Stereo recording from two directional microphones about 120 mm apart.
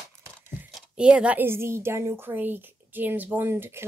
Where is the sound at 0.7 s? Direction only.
5° right (ahead or behind).